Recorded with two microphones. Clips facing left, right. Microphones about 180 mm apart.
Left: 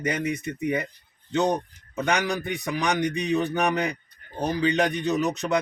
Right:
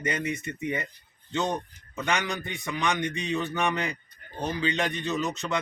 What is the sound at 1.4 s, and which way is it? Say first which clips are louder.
Speech: left 5 dB; 35° left (ahead or behind).